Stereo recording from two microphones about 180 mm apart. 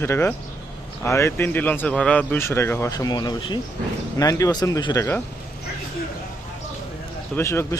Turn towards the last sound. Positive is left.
turn(degrees=15)  # may be behind; listen again after turning